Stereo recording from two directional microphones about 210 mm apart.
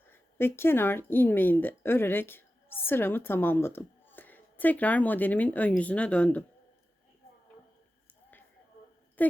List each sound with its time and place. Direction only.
0.1 s a woman's voice: 10° left (ahead or behind)
9.2 s speech: 10° left (ahead or behind)